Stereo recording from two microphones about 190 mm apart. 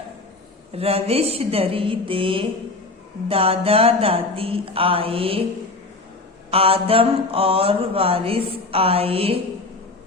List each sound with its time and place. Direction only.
0.7 s a woman's voice: 30° right (ahead or behind)
3.2 s mantra: 30° right (ahead or behind)
6.5 s mantra: 30° right (ahead or behind)